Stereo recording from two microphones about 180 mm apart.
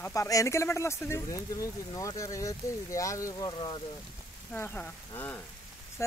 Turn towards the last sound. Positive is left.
turn(degrees=15)  # may be behind; listen again after turning